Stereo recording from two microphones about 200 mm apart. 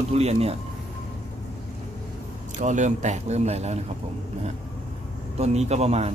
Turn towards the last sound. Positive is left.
turn(degrees=-30)  # may be behind; listen again after turning